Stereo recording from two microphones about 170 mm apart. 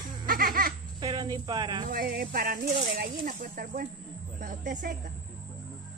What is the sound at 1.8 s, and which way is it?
Speech, 60° right (ahead or behind).